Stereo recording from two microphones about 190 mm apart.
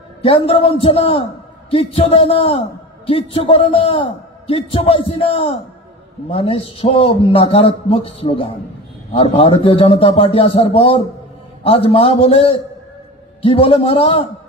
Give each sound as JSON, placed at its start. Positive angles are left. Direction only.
{"t": 0.2, "sound": "a man's voice", "side_deg": 30}
{"t": 13.6, "sound": "a man's voice", "side_deg": 30}